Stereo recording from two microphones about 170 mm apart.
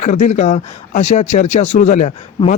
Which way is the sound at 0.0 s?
45° left (ahead or behind).